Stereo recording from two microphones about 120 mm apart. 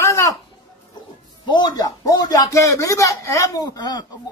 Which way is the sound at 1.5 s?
35° left (ahead or behind).